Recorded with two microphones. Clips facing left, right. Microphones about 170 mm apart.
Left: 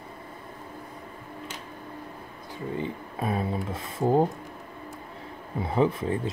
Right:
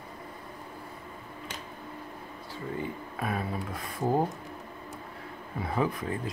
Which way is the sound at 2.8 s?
25° left (ahead or behind).